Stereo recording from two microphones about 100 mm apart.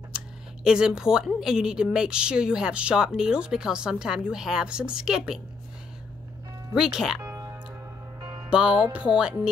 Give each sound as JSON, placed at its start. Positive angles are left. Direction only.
{"t": 0.7, "sound": "a woman's voice", "side_deg": -5}
{"t": 6.7, "sound": "speech", "side_deg": -5}
{"t": 7.2, "sound": "music", "side_deg": -35}
{"t": 8.5, "sound": "a woman's voice", "side_deg": -10}